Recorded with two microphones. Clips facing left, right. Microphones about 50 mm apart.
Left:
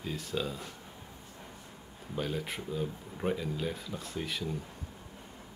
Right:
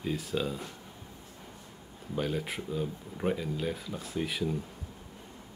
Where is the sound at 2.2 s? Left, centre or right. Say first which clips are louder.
Right 2 dB; centre.